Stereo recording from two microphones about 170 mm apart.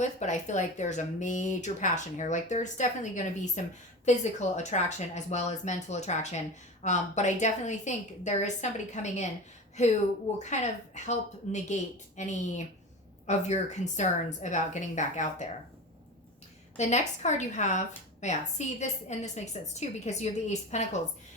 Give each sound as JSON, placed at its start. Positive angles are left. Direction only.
{"t": 0.0, "sound": "speech", "side_deg": 45}
{"t": 10.3, "sound": "speech", "side_deg": 45}
{"t": 16.7, "sound": "a woman's voice", "side_deg": 40}